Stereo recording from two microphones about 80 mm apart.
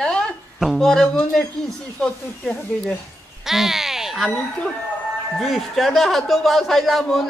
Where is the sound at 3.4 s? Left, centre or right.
Centre.